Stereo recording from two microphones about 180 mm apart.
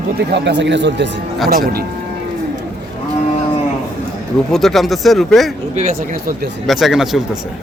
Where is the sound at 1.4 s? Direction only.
55° right (ahead or behind).